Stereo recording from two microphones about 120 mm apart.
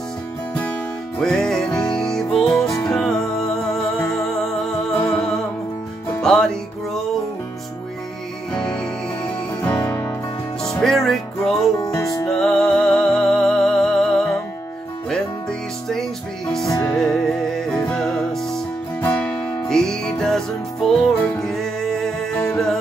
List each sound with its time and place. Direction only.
1.2 s music: 5° left (ahead or behind)
8.5 s music: 5° left (ahead or behind)
10.8 s music: 5° left (ahead or behind)
11.8 s music: 30° left (ahead or behind)
12.3 s music: 5° left (ahead or behind)
15.9 s music: 5° left (ahead or behind)